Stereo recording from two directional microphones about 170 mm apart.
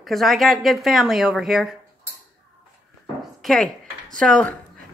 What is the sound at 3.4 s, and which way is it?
Speech, 5° left (ahead or behind).